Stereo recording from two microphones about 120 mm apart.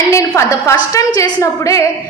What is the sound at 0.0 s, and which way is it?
A woman's voice, 25° left (ahead or behind).